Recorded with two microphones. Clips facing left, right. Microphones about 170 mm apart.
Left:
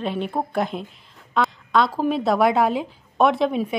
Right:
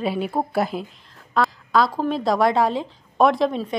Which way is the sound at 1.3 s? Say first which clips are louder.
Right 1 dB; centre (ahead or behind).